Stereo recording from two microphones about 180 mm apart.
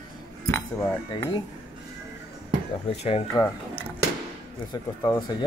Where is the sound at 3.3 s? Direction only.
10° left (ahead or behind).